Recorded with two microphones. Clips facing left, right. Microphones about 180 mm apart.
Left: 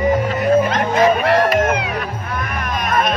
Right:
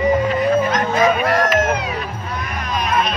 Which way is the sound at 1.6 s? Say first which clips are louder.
Left 2 dB; 60° left (ahead or behind).